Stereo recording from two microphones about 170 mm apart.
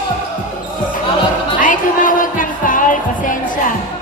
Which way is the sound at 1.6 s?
50° left (ahead or behind).